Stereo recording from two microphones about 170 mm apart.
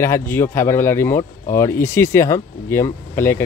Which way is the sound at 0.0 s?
15° left (ahead or behind).